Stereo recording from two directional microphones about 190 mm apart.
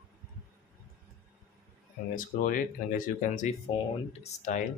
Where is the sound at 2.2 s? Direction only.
45° left (ahead or behind).